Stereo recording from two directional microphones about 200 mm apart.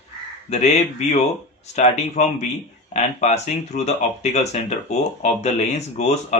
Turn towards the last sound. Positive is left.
turn(degrees=35)  # may be behind; listen again after turning